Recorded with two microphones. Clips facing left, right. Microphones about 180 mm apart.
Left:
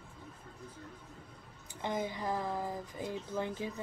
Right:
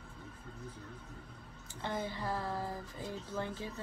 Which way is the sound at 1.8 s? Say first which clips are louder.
Left 2 dB; 15° left (ahead or behind).